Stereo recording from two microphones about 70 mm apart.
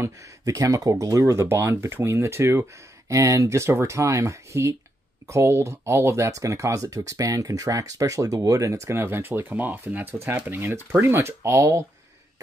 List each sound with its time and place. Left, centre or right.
0.0 s speech: right